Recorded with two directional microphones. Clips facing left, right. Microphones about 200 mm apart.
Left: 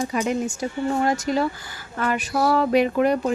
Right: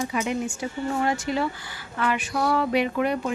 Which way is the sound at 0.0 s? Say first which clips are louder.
Left 3 dB; 40° left (ahead or behind).